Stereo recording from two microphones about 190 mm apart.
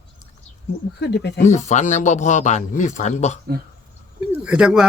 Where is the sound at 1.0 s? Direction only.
65° left (ahead or behind).